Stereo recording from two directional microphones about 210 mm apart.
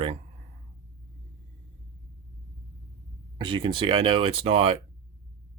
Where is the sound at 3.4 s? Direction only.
20° right (ahead or behind).